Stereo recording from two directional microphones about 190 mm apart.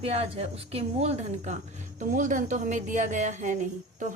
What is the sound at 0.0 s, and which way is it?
Speech, 30° right (ahead or behind).